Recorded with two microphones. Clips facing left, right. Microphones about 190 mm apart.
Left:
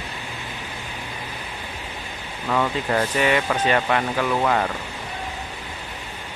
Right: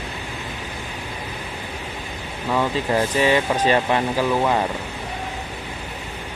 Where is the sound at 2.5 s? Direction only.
10° right (ahead or behind).